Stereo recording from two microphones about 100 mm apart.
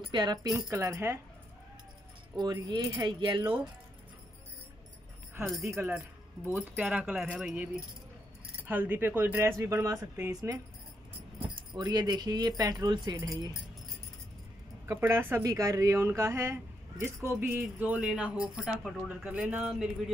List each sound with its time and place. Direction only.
0.1 s speech: 45° right (ahead or behind); by 1.2 s 30° right (ahead or behind)
2.3 s speech: 45° right (ahead or behind)
5.6 s speech: 30° right (ahead or behind)
6.8 s speech: 10° right (ahead or behind); by 10.6 s 35° right (ahead or behind)
11.8 s speech: 45° right (ahead or behind)
13.2 s speech: 35° right (ahead or behind)
14.9 s speech: 25° right (ahead or behind); by 19.9 s 5° right (ahead or behind)